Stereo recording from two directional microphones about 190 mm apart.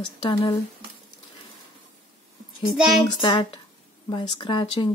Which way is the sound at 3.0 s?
25° left (ahead or behind).